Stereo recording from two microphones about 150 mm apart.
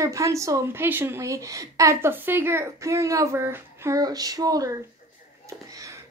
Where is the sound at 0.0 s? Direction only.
20° right (ahead or behind).